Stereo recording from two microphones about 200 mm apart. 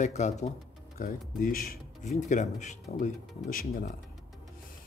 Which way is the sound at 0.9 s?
45° left (ahead or behind).